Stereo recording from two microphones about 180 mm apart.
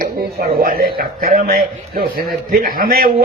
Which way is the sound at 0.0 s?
55° right (ahead or behind).